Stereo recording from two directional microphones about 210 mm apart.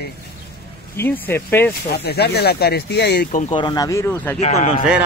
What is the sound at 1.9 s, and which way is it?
Speech, 50° left (ahead or behind).